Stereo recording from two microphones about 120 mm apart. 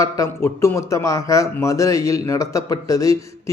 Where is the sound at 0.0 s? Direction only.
25° left (ahead or behind).